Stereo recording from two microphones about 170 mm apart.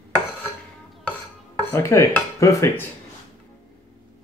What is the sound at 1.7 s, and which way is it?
Speech, 15° left (ahead or behind).